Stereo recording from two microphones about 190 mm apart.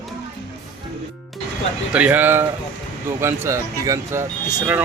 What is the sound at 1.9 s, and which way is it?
Speech, 5° right (ahead or behind).